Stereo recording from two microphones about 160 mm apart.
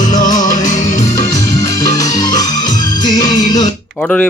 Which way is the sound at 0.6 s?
50° left (ahead or behind).